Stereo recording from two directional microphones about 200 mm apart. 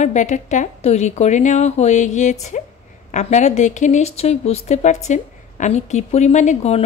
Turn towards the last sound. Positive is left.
turn(degrees=35)  # may be behind; listen again after turning